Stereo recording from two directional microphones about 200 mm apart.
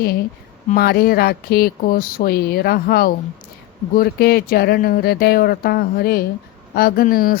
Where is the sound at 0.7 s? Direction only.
50° left (ahead or behind).